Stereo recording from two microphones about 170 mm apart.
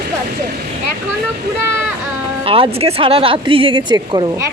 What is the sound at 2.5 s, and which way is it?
Speech, 30° right (ahead or behind).